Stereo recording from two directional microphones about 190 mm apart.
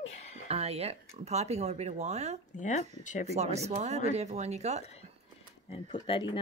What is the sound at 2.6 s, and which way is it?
Speech, 40° left (ahead or behind).